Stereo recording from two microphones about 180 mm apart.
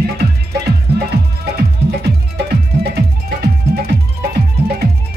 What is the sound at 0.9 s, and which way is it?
Music, 60° right (ahead or behind).